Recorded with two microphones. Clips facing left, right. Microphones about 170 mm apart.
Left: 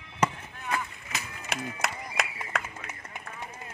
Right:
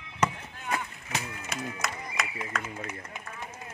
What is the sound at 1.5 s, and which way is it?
Run, 70° left (ahead or behind).